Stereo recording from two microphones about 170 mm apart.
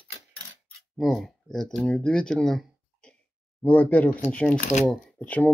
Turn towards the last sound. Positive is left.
turn(degrees=10)  # may be behind; listen again after turning